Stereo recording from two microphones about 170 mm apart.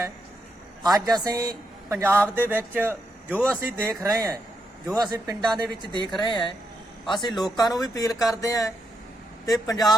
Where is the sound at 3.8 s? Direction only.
20° right (ahead or behind).